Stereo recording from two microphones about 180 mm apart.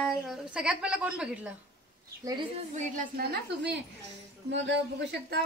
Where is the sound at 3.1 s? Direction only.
65° right (ahead or behind).